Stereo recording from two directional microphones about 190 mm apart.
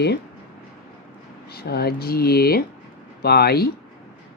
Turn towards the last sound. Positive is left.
turn(degrees=55)  # may be behind; listen again after turning